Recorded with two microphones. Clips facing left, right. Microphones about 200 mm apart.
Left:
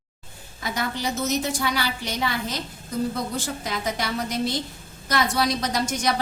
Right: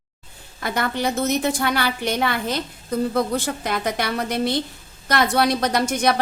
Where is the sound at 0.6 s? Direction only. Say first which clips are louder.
Right 5 dB; 60° right (ahead or behind).